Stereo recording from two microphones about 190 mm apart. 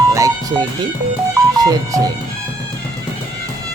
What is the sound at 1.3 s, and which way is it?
Speech, 20° right (ahead or behind).